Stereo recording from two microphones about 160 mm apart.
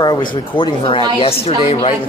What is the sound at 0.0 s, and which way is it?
A woman's voice, 25° left (ahead or behind).